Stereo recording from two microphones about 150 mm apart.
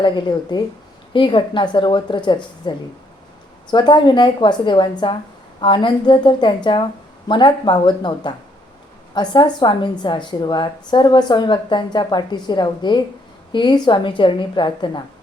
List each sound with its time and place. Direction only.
0.0 s a woman's voice: 30° left (ahead or behind)